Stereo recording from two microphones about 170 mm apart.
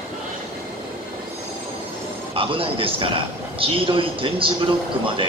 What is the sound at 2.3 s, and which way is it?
A man's voice, 30° right (ahead or behind).